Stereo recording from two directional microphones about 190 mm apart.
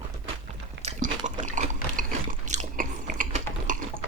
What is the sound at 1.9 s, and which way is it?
Biting, 40° right (ahead or behind).